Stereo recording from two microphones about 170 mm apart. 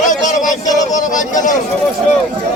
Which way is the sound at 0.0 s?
45° left (ahead or behind).